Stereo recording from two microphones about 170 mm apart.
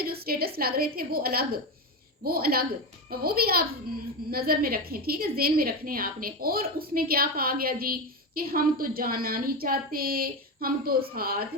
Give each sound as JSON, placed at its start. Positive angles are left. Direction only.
{"t": 0.0, "sound": "a woman's voice", "side_deg": -65}